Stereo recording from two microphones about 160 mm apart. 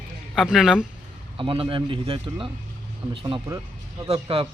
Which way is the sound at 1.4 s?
30° right (ahead or behind).